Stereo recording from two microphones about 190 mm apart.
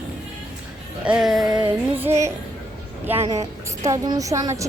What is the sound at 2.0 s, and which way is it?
Speech, 15° right (ahead or behind).